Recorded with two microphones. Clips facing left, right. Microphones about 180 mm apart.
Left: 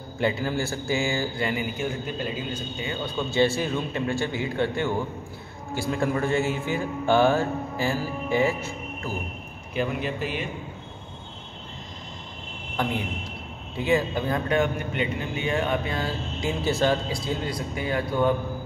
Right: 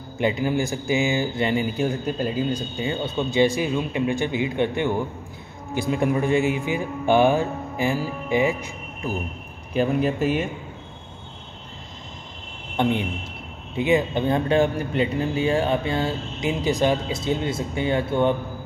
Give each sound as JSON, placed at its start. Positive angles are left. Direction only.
{"t": 0.2, "sound": "speech", "side_deg": -20}
{"t": 3.3, "sound": "speech", "side_deg": -15}
{"t": 9.8, "sound": "speech", "side_deg": -40}
{"t": 12.8, "sound": "speech", "side_deg": -25}